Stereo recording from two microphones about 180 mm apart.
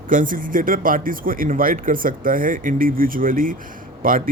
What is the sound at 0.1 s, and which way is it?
Speech, 50° right (ahead or behind).